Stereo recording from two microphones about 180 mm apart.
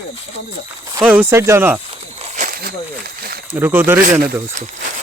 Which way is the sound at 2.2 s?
50° right (ahead or behind).